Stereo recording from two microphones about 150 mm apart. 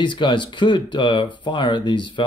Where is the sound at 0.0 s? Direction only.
30° left (ahead or behind).